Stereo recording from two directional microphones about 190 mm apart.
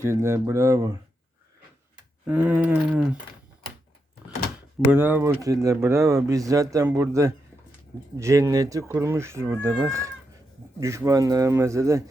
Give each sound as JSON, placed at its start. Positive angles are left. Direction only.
{"t": 0.0, "sound": "speech", "side_deg": -15}
{"t": 2.2, "sound": "speech", "side_deg": -10}
{"t": 4.9, "sound": "speech", "side_deg": -10}